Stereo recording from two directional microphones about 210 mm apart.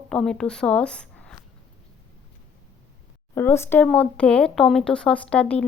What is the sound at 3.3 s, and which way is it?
Speech, 10° left (ahead or behind).